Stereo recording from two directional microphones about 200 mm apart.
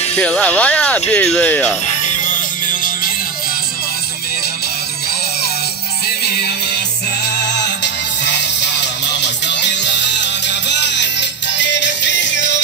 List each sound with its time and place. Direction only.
0.1 s speech: 5° left (ahead or behind)
2.2 s music: 40° left (ahead or behind)
6.2 s music: 55° left (ahead or behind)
7.6 s music: 60° left (ahead or behind)